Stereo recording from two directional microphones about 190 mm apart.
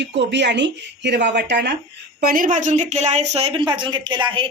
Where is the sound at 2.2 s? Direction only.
50° right (ahead or behind).